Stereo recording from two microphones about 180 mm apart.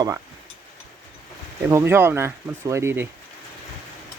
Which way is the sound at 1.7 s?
15° right (ahead or behind).